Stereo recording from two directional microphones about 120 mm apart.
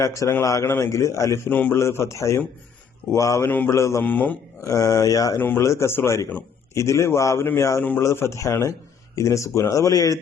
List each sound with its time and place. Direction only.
0.0 s a man's voice: 25° left (ahead or behind)
1.5 s a man's voice: 15° left (ahead or behind)
4.0 s speech: 15° left (ahead or behind)
4.6 s a man's voice: 25° left (ahead or behind)